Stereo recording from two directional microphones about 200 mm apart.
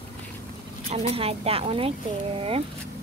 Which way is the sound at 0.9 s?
30° right (ahead or behind).